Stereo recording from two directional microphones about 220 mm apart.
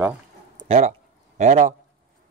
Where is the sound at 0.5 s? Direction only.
30° right (ahead or behind).